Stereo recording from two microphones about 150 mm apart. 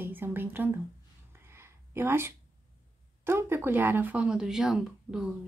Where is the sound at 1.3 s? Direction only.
15° right (ahead or behind).